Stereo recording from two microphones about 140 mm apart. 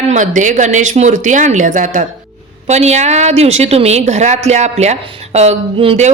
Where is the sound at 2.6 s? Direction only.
50° right (ahead or behind).